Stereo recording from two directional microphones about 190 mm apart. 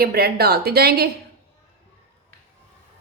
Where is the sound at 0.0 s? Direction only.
55° right (ahead or behind).